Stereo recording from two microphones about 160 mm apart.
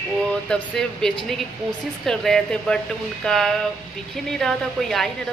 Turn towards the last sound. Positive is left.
turn(degrees=0)  # may be behind; listen again after turning